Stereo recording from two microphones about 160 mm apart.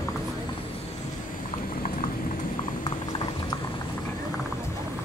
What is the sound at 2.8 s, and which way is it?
Boiling, 25° left (ahead or behind).